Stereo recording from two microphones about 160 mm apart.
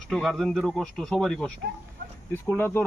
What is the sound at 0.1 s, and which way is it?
A man's voice, centre (ahead or behind).